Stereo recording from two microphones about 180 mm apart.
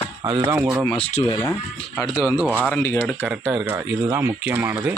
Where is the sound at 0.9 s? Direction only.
30° left (ahead or behind).